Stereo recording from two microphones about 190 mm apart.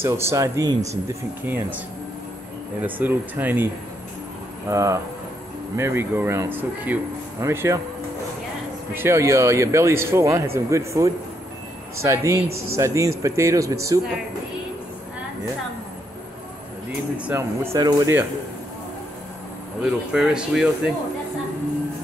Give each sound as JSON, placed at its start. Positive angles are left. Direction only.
{"t": 0.0, "sound": "speech", "side_deg": -15}
{"t": 2.8, "sound": "speech", "side_deg": -10}
{"t": 8.9, "sound": "speech", "side_deg": -15}
{"t": 17.2, "sound": "speech", "side_deg": -10}
{"t": 19.8, "sound": "speech", "side_deg": -5}